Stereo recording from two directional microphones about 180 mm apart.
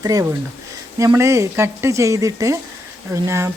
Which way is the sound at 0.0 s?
20° right (ahead or behind).